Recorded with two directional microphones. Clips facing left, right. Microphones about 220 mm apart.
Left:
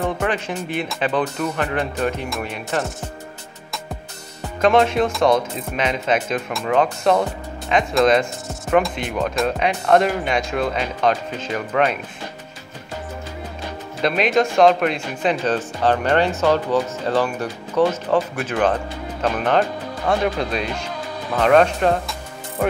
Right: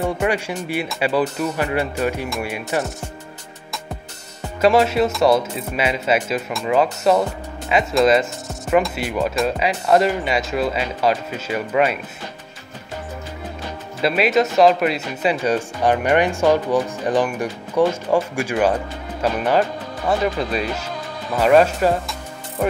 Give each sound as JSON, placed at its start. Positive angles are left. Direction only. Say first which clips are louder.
{"t": 0.0, "sound": "a sound", "louder": "right 2 dB", "side_deg": -10}
{"t": 0.7, "sound": "speech", "louder": "right 2 dB", "side_deg": -5}
{"t": 4.4, "sound": "speech", "louder": "right 1 dB", "side_deg": -5}
{"t": 14.0, "sound": "speech", "louder": "right 1 dB", "side_deg": -5}